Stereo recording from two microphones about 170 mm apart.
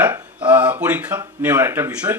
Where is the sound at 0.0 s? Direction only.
10° right (ahead or behind).